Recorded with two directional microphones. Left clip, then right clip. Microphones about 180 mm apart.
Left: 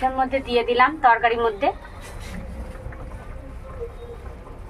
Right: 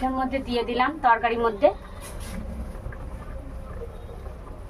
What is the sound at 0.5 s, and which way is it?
A woman's voice, 5° left (ahead or behind).